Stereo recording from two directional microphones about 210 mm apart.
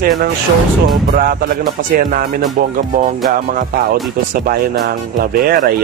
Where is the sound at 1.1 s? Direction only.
45° right (ahead or behind).